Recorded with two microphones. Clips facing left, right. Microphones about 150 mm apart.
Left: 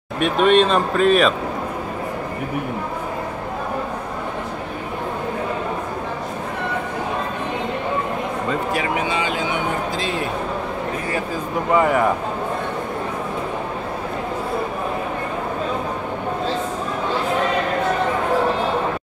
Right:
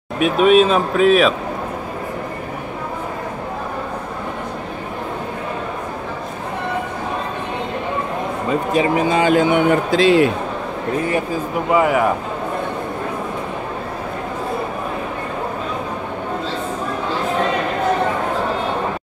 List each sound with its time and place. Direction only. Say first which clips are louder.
0.2 s speech: right 3 dB; 5° right (ahead or behind)
8.7 s speech: right 6 dB; 30° right (ahead or behind)
9.0 s a man's voice: right 8 dB; 45° right (ahead or behind); by 10.3 s 90° right
11.7 s speech: right 1 dB; 5° right (ahead or behind)